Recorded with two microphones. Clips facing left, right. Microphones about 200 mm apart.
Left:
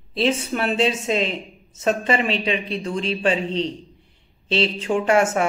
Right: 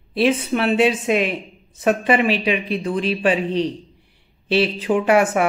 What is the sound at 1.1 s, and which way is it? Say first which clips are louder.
Speech: right 3 dB; 25° left (ahead or behind).